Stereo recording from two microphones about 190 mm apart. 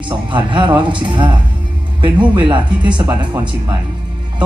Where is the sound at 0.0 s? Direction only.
25° right (ahead or behind).